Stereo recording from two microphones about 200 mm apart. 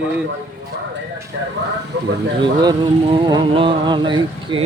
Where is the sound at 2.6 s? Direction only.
20° right (ahead or behind).